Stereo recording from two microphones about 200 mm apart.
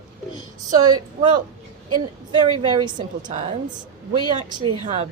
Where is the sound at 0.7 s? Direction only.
20° right (ahead or behind).